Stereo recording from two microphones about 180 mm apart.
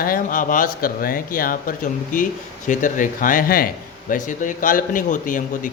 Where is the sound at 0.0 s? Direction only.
50° left (ahead or behind).